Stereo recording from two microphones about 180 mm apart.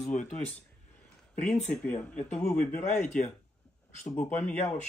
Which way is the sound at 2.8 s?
40° left (ahead or behind).